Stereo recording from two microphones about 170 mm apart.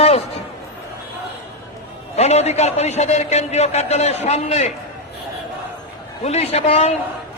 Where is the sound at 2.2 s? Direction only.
40° left (ahead or behind).